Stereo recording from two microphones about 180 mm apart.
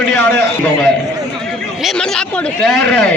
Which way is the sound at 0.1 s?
10° left (ahead or behind).